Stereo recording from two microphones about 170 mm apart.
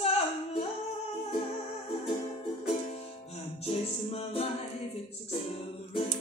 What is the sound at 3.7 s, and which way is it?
Music, 35° left (ahead or behind).